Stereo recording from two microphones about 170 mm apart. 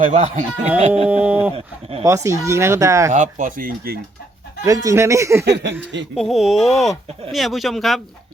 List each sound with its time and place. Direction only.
0.0 s speech: 45° right (ahead or behind)
1.1 s speech: 10° right (ahead or behind)
1.5 s speech: 35° right (ahead or behind)
2.0 s speech: 15° right (ahead or behind)
3.1 s speech: 50° right (ahead or behind)
4.6 s speech: 20° right (ahead or behind)
5.5 s speech: 85° right
6.1 s speech: centre (ahead or behind)